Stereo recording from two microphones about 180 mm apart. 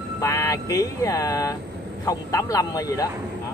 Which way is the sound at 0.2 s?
20° left (ahead or behind).